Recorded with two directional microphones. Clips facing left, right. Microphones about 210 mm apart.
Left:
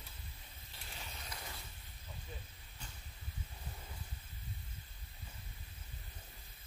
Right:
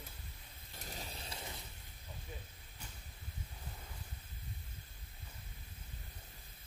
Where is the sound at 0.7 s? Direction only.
40° right (ahead or behind).